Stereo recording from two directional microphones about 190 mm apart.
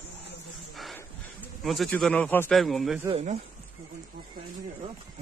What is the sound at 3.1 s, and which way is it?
Speech, 30° right (ahead or behind).